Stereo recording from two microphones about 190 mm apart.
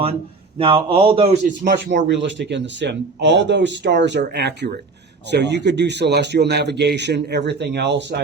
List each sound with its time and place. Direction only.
0.6 s a man's voice: 25° right (ahead or behind)
1.6 s a man's voice: 65° right (ahead or behind)